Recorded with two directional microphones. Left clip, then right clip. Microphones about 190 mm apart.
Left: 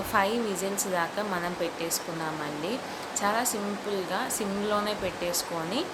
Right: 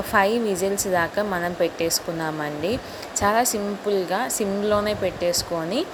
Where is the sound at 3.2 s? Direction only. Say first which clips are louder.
Right 7 dB; 35° right (ahead or behind).